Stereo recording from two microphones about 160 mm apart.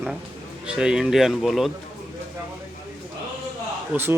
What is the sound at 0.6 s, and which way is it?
A man's voice, 5° right (ahead or behind).